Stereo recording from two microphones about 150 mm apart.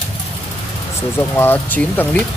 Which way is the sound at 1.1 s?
15° left (ahead or behind).